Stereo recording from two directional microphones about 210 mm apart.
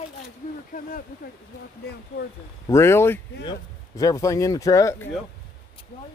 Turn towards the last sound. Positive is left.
turn(degrees=15)  # may be behind; listen again after turning